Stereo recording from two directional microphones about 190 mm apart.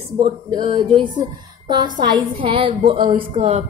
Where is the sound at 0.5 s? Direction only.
25° right (ahead or behind).